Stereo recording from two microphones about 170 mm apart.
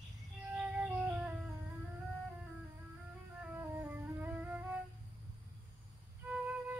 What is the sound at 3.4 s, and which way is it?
Music, 10° right (ahead or behind).